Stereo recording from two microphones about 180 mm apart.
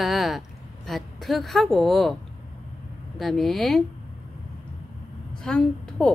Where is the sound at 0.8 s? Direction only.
Centre (ahead or behind).